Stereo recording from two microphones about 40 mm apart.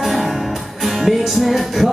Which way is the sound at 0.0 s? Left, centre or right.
Centre.